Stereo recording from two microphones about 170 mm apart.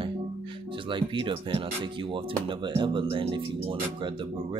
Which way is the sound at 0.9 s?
30° right (ahead or behind).